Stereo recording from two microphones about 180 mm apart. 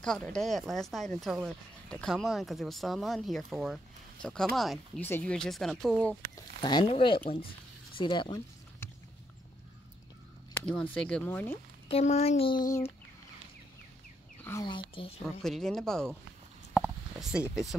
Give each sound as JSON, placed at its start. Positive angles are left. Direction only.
{"t": 0.0, "sound": "speech", "side_deg": 5}
{"t": 6.6, "sound": "speech", "side_deg": 25}
{"t": 10.5, "sound": "speech", "side_deg": 5}
{"t": 11.9, "sound": "speech", "side_deg": 35}
{"t": 15.0, "sound": "speech", "side_deg": 30}
{"t": 15.4, "sound": "speech", "side_deg": 0}
{"t": 16.8, "sound": "a sound", "side_deg": -5}